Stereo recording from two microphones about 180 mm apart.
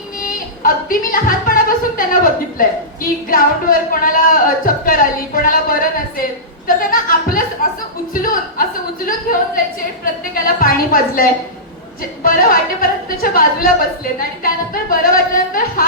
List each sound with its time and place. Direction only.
0.2 s a woman's voice: 50° left (ahead or behind)
10.0 s a woman's voice: 55° left (ahead or behind)